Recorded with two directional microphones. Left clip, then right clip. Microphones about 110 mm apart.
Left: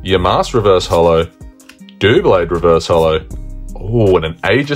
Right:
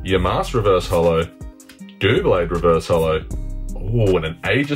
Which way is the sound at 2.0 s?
25° left (ahead or behind).